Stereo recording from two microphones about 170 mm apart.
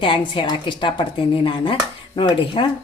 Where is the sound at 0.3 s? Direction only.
30° left (ahead or behind).